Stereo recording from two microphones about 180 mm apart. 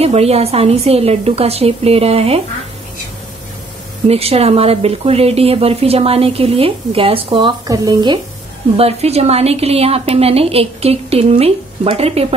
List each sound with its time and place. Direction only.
0.0 s speech: 35° right (ahead or behind)
4.1 s speech: 35° right (ahead or behind)
8.7 s speech: 35° right (ahead or behind)